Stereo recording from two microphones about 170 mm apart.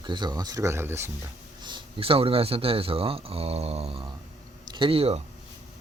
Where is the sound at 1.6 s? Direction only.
25° right (ahead or behind).